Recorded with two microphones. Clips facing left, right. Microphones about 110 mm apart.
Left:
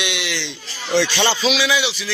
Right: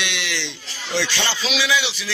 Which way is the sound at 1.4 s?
5° left (ahead or behind).